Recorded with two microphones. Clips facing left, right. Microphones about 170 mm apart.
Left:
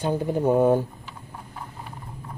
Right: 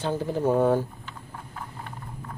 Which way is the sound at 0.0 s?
15° left (ahead or behind).